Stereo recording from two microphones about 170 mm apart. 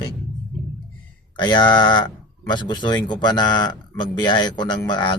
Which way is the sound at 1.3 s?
25° left (ahead or behind).